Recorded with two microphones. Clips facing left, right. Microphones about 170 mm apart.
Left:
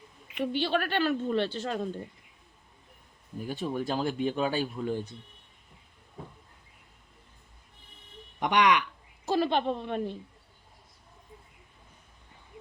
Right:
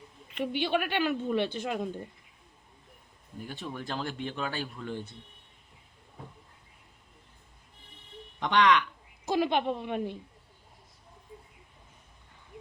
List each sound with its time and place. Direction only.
0.4 s speech: 15° right (ahead or behind)
3.4 s speech: 15° left (ahead or behind)
8.4 s speech: 15° left (ahead or behind)
9.2 s speech: 15° right (ahead or behind)